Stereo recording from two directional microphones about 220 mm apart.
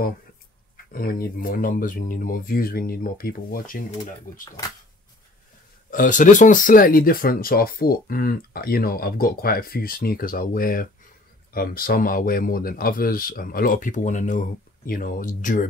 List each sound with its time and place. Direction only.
0.9 s speech: 40° left (ahead or behind)
5.9 s speech: 35° left (ahead or behind)